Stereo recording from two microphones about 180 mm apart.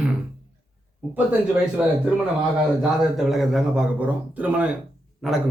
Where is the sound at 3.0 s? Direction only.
Centre (ahead or behind).